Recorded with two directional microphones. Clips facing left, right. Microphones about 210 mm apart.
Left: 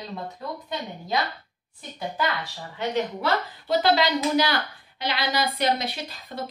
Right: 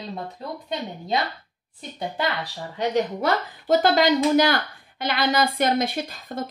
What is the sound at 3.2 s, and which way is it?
A woman's voice, 45° right (ahead or behind).